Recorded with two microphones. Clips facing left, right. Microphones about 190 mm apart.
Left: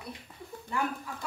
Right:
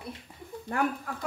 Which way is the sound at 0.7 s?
55° right (ahead or behind).